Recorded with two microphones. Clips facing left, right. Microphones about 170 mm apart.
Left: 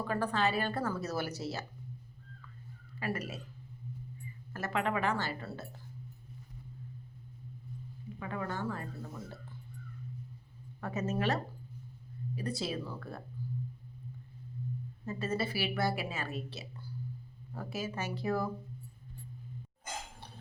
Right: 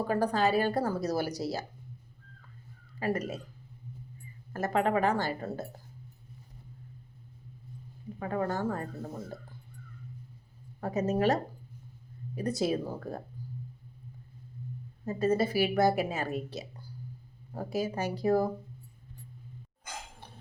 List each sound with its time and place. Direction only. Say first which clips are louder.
0.0 s speech: right 5 dB; 40° right (ahead or behind)
3.0 s speech: right 6 dB; 40° right (ahead or behind)
4.5 s speech: right 6 dB; 40° right (ahead or behind)
8.2 s speech: right 6 dB; 40° right (ahead or behind)
10.8 s speech: right 6 dB; 35° right (ahead or behind)
12.4 s a woman's voice: right 7 dB; 45° right (ahead or behind)
15.0 s a woman's voice: right 8 dB; 40° right (ahead or behind)
17.5 s speech: right 6 dB; 40° right (ahead or behind)